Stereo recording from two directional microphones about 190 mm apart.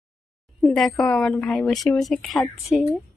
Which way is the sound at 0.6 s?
Centre (ahead or behind).